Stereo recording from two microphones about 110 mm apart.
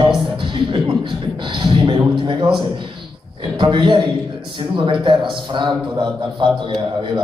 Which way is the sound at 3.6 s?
45° right (ahead or behind).